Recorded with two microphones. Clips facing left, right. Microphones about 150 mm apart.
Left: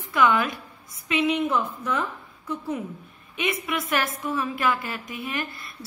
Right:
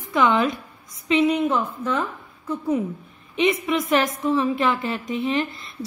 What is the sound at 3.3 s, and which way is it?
A woman's voice, 25° right (ahead or behind).